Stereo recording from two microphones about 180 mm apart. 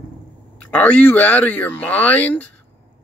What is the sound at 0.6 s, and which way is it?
Speech, 5° left (ahead or behind).